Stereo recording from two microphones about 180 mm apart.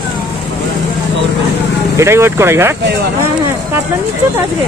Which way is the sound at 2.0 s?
15° right (ahead or behind).